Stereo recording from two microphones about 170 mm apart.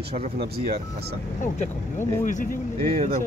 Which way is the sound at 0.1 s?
60° right (ahead or behind).